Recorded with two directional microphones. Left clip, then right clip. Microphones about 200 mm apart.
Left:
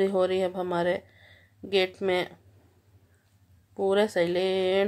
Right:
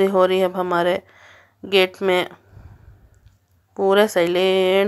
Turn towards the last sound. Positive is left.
turn(degrees=-15)  # may be behind; listen again after turning